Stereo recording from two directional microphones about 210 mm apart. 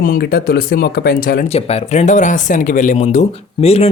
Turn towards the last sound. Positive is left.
turn(degrees=30)  # may be behind; listen again after turning